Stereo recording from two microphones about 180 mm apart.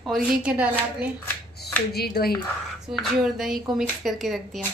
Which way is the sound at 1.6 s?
60° left (ahead or behind).